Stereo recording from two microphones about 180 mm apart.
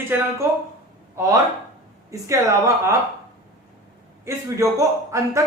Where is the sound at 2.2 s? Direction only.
15° right (ahead or behind).